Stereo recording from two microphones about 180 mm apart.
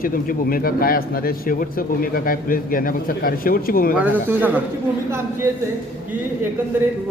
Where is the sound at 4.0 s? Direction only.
10° right (ahead or behind).